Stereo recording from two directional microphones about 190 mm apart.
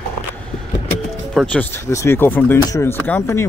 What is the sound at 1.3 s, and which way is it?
Speech, 10° left (ahead or behind).